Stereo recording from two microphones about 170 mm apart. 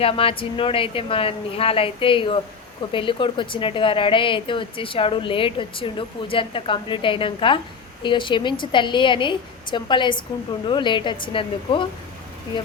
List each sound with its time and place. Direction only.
0.0 s a woman's voice: 35° left (ahead or behind)